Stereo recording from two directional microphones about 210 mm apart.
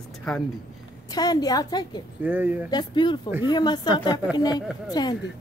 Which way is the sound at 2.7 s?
20° left (ahead or behind).